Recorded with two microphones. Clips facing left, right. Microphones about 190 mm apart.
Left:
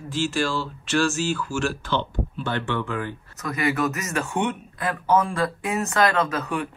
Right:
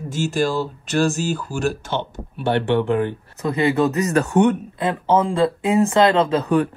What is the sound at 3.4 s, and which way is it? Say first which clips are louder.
Speech: right 6 dB; 30° right (ahead or behind).